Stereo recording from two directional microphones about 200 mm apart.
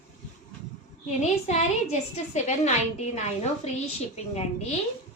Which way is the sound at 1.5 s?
35° left (ahead or behind).